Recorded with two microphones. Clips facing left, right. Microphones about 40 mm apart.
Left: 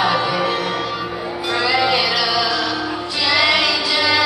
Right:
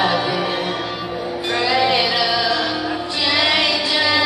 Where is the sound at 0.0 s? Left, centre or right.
Centre.